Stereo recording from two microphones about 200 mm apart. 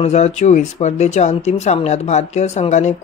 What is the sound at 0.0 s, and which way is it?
Speech, 35° left (ahead or behind).